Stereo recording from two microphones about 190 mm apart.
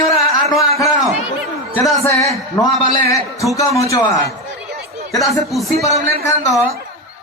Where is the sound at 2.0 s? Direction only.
15° left (ahead or behind).